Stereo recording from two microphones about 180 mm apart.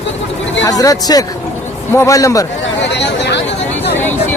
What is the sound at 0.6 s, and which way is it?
A man's voice, 20° left (ahead or behind).